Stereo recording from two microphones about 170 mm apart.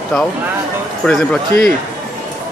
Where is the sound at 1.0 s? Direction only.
Centre (ahead or behind).